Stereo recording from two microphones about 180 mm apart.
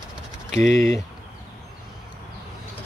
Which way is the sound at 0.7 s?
15° left (ahead or behind).